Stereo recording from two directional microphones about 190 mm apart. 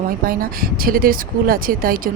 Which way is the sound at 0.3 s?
50° right (ahead or behind).